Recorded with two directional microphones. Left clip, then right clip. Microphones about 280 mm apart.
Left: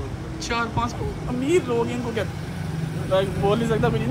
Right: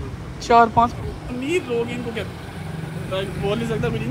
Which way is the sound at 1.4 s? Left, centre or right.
Left.